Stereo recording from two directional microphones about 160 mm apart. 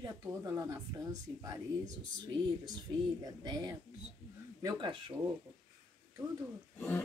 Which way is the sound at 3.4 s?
25° right (ahead or behind).